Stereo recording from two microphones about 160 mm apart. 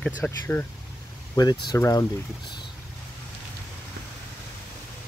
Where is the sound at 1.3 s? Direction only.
25° left (ahead or behind).